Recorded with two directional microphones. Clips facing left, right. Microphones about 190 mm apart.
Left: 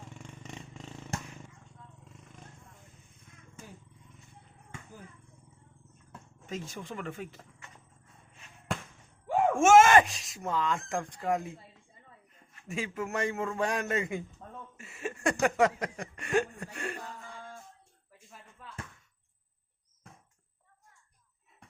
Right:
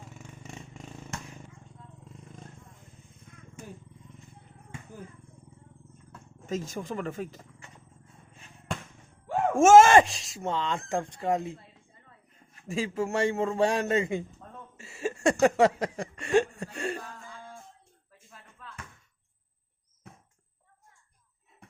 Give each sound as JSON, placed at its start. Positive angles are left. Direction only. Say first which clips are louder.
{"t": 0.0, "sound": "vehicle", "louder": "even", "side_deg": -5}
{"t": 6.4, "sound": "speech", "louder": "right 6 dB", "side_deg": -40}
{"t": 9.6, "sound": "speech", "louder": "right 4 dB", "side_deg": -35}
{"t": 12.6, "sound": "speech", "louder": "right 5 dB", "side_deg": -30}
{"t": 14.8, "sound": "a sound", "louder": "right 6 dB", "side_deg": -30}